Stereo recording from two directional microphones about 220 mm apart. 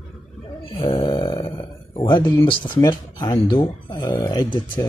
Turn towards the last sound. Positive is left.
turn(degrees=20)  # may be behind; listen again after turning